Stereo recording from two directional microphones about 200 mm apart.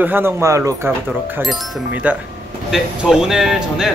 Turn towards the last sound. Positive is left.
turn(degrees=-5)  # may be behind; listen again after turning